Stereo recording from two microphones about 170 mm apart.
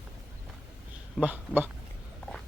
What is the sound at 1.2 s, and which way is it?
Speech, 10° right (ahead or behind).